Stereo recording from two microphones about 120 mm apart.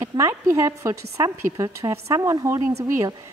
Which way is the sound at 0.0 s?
25° right (ahead or behind).